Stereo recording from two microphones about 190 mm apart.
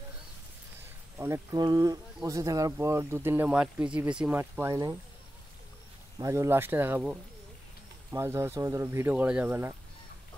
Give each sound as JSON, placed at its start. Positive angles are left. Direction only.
{"t": 1.1, "sound": "speech", "side_deg": -15}
{"t": 6.1, "sound": "speech", "side_deg": -15}